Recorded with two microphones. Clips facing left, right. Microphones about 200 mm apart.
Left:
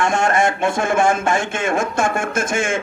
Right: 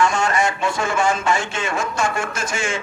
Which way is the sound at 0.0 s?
55° left (ahead or behind).